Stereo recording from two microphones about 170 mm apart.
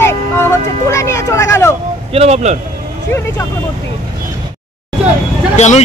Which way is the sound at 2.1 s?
40° right (ahead or behind).